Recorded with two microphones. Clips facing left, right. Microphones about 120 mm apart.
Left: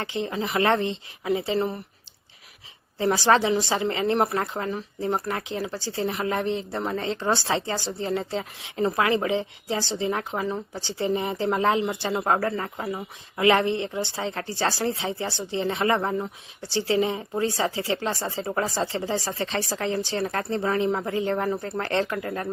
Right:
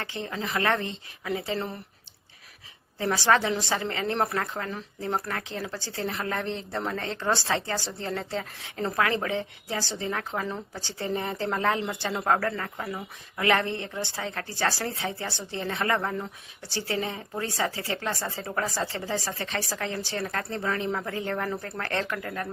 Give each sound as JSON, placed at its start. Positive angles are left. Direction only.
{"t": 0.0, "sound": "speech", "side_deg": 20}
{"t": 3.0, "sound": "speech", "side_deg": 25}
{"t": 4.4, "sound": "speech", "side_deg": 25}
{"t": 4.7, "sound": "a woman's voice", "side_deg": 10}